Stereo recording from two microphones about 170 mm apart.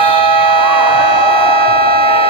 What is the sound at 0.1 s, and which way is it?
Civil defense siren, 30° left (ahead or behind).